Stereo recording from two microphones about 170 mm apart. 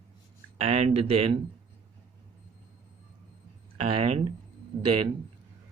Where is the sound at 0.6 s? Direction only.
40° right (ahead or behind).